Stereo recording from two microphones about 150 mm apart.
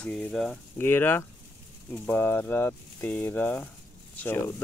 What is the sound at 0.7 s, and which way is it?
Speech, 15° left (ahead or behind).